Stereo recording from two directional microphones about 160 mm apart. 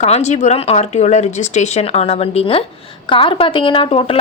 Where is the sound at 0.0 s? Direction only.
45° left (ahead or behind).